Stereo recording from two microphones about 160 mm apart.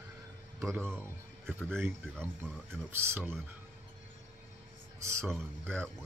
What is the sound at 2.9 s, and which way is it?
Speech, 15° right (ahead or behind).